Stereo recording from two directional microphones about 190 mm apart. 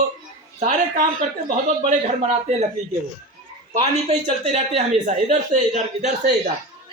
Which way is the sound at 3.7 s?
35° right (ahead or behind).